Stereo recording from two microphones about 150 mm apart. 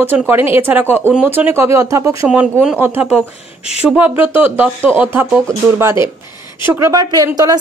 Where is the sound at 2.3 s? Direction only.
5° right (ahead or behind).